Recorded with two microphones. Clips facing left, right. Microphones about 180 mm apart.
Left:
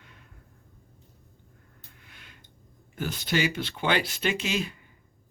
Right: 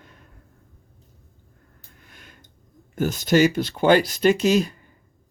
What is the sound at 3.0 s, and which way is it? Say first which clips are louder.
Speech: right 10 dB; 45° right (ahead or behind).